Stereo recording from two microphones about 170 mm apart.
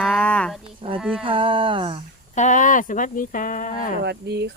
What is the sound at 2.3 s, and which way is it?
Speech, 45° left (ahead or behind).